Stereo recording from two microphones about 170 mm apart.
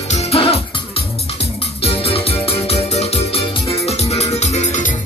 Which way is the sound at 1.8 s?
35° left (ahead or behind).